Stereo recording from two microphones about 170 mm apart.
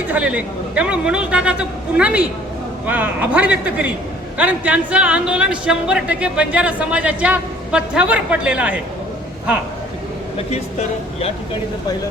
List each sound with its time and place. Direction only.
0.1 s speech: 10° right (ahead or behind)
10.3 s speech: 40° left (ahead or behind)